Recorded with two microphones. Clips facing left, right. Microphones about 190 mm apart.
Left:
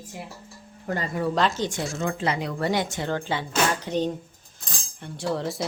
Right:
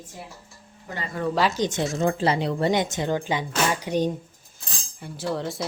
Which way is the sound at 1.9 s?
35° right (ahead or behind).